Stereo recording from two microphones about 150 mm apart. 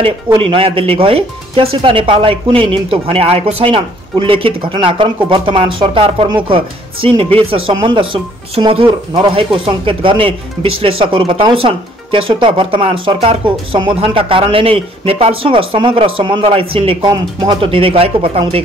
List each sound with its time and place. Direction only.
0.4 s speech: 35° right (ahead or behind)